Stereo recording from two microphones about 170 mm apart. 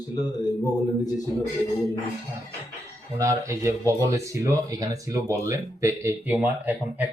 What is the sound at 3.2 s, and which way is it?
Speech, 15° right (ahead or behind).